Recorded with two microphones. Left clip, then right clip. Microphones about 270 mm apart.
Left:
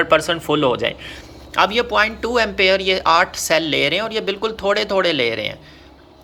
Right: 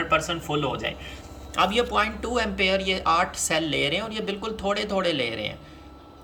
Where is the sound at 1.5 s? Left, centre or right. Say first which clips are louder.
Left 6 dB; centre.